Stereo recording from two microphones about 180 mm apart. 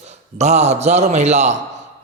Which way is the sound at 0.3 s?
40° right (ahead or behind).